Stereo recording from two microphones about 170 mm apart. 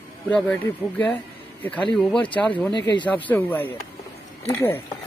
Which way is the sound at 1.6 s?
5° left (ahead or behind).